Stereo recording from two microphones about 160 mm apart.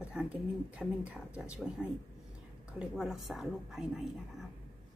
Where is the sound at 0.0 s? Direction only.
5° right (ahead or behind).